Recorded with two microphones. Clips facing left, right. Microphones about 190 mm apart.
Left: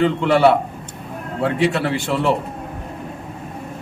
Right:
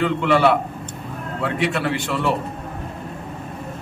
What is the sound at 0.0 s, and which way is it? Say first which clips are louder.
A man's voice: left 3 dB; 30° left (ahead or behind).